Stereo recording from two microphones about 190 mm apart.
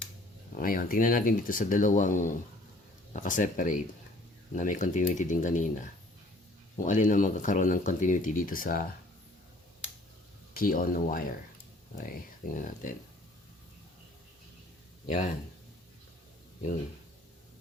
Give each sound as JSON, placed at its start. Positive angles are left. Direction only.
{"t": 0.5, "sound": "speech", "side_deg": 45}
{"t": 10.5, "sound": "speech", "side_deg": 50}
{"t": 15.0, "sound": "speech", "side_deg": 40}